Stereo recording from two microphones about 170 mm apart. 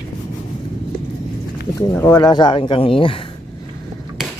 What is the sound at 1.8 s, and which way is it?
Speech, 20° left (ahead or behind).